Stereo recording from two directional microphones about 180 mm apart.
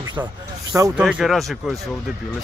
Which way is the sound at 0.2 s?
10° right (ahead or behind).